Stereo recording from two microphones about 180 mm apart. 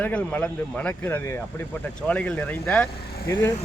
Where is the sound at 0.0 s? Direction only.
10° left (ahead or behind).